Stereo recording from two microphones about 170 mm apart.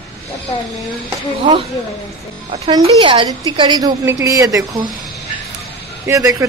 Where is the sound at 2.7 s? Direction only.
35° right (ahead or behind).